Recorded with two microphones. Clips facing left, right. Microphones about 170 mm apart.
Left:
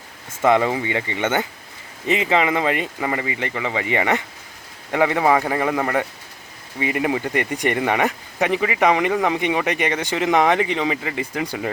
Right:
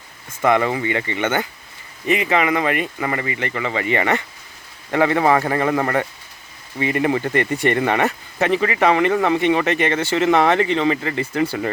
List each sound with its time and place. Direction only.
0.4 s speech: 20° left (ahead or behind)